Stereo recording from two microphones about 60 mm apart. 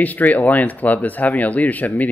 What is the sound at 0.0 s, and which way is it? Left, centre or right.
Speech, left.